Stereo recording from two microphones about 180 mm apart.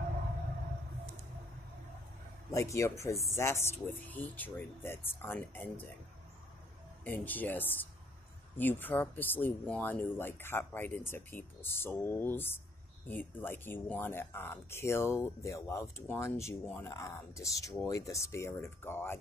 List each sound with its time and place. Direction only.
2.5 s speech: 15° left (ahead or behind)
7.1 s speech: 10° left (ahead or behind)